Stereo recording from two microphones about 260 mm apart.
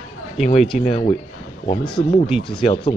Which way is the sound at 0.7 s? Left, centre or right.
Left.